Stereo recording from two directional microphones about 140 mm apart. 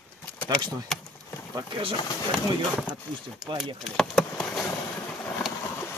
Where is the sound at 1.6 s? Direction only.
40° right (ahead or behind).